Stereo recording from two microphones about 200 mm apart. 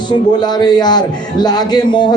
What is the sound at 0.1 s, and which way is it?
A man's voice, 20° left (ahead or behind).